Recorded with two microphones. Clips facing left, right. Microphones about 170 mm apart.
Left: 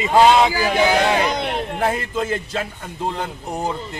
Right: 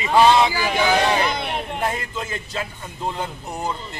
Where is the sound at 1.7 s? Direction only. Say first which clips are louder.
Left 6 dB; 50° left (ahead or behind).